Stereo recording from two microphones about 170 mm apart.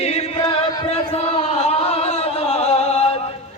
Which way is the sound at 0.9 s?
35° left (ahead or behind).